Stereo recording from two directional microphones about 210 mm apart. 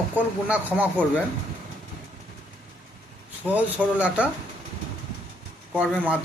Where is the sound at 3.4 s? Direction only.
5° right (ahead or behind).